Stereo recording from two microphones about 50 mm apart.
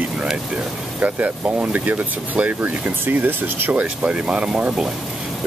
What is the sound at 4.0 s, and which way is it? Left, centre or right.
Speech, right.